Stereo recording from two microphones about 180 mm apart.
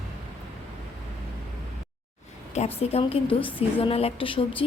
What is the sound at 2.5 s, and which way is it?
A woman's voice, 35° left (ahead or behind).